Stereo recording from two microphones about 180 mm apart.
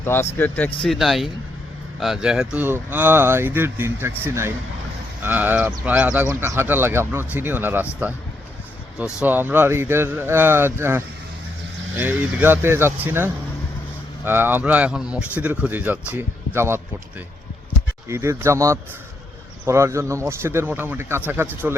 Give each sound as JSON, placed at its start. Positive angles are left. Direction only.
{"t": 0.0, "sound": "speech", "side_deg": 10}
{"t": 9.2, "sound": "speech", "side_deg": -10}